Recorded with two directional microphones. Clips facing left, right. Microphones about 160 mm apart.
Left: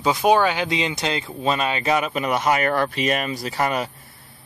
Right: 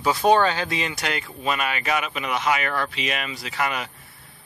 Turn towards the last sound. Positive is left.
turn(degrees=35)  # may be behind; listen again after turning